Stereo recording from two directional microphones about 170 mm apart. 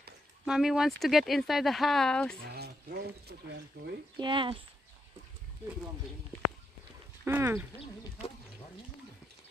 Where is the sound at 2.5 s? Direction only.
70° right (ahead or behind).